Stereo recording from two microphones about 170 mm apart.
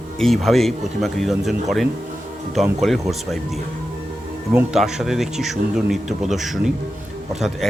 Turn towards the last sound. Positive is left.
turn(degrees=0)  # may be behind; listen again after turning